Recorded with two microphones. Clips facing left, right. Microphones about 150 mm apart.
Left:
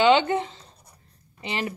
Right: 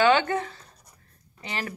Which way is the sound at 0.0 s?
20° left (ahead or behind).